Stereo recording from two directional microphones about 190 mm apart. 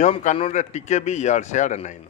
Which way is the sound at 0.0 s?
40° left (ahead or behind).